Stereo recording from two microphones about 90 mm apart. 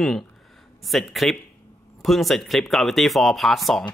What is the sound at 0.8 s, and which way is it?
Speech, centre (ahead or behind).